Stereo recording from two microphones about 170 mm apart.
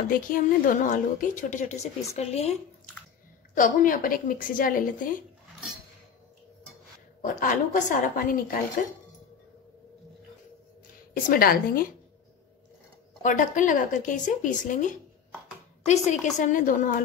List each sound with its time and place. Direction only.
0.1 s speech: 55° left (ahead or behind); by 2.5 s 40° left (ahead or behind)
3.5 s speech: 50° left (ahead or behind)
7.2 s speech: 50° left (ahead or behind)
11.2 s a woman's voice: 60° left (ahead or behind)
13.2 s speech: 50° left (ahead or behind)
16.1 s speech: 50° left (ahead or behind)